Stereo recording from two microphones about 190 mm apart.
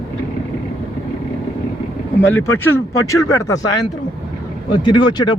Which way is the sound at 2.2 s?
10° left (ahead or behind).